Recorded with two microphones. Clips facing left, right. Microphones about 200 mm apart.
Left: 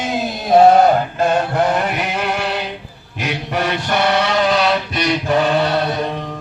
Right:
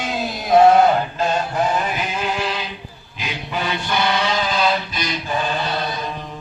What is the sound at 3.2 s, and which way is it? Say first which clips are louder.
Mantra: left 5 dB; 70° left (ahead or behind).